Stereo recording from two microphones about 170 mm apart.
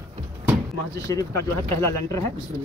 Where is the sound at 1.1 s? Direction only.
20° left (ahead or behind).